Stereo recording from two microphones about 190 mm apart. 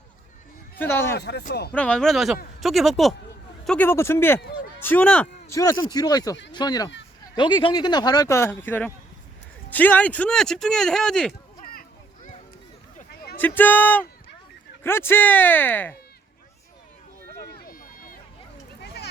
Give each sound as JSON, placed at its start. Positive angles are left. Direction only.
{"t": 0.8, "sound": "speech", "side_deg": 10}
{"t": 1.1, "sound": "speech", "side_deg": 60}
{"t": 1.7, "sound": "speech", "side_deg": 5}
{"t": 11.6, "sound": "children playing", "side_deg": 45}
{"t": 13.3, "sound": "speech", "side_deg": 10}
{"t": 17.3, "sound": "run", "side_deg": 55}